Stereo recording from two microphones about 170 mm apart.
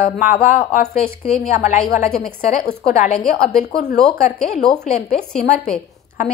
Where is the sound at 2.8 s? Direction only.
40° left (ahead or behind).